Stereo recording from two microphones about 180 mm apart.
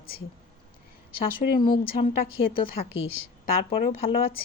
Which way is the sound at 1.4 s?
55° left (ahead or behind).